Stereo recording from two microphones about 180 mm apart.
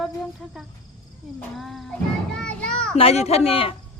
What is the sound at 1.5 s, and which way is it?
Children playing, centre (ahead or behind).